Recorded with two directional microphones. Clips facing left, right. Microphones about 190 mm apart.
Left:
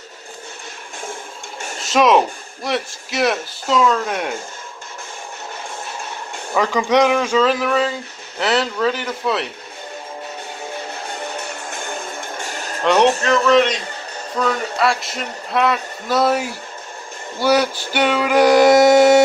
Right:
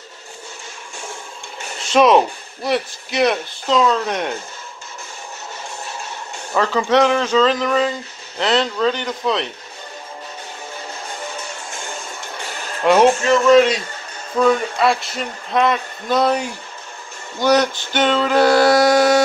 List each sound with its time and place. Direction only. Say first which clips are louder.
1.8 s speech: right 1 dB; centre (ahead or behind)
6.6 s music: even; 15° left (ahead or behind)
8.4 s speech: right 1 dB; 5° left (ahead or behind)
11.7 s music: left 3 dB; 55° left (ahead or behind)
12.8 s speech: right 2 dB; 5° right (ahead or behind)
17.4 s music: right 1 dB; 10° left (ahead or behind)